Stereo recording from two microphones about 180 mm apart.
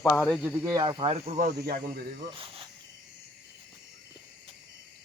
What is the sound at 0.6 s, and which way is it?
Speech, 20° right (ahead or behind).